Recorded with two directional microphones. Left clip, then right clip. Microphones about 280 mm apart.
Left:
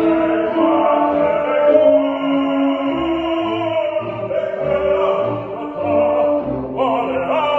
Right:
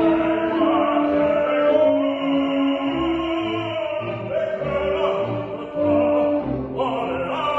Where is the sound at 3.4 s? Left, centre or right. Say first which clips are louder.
Left 5 dB; right.